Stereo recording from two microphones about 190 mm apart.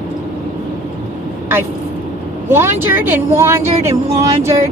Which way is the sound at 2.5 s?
10° right (ahead or behind).